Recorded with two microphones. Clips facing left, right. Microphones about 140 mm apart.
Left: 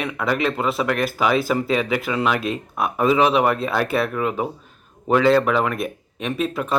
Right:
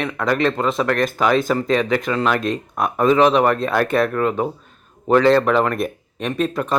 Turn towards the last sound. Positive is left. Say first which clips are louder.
# right 2 dB
turn(degrees=5)  # may be behind; listen again after turning